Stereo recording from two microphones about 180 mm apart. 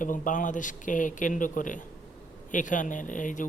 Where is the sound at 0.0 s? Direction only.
45° left (ahead or behind).